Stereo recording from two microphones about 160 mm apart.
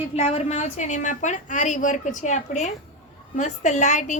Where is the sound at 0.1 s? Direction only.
45° left (ahead or behind).